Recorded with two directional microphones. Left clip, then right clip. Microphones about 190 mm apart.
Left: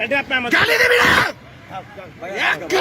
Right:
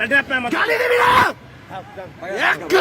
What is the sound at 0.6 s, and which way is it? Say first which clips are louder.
Speech: left 2 dB; 5° right (ahead or behind).